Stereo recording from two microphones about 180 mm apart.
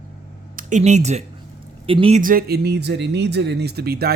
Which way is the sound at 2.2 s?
50° right (ahead or behind).